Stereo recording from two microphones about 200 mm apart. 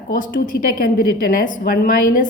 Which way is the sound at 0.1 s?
45° left (ahead or behind).